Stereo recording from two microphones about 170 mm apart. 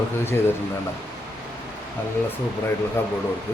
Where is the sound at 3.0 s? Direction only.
15° left (ahead or behind).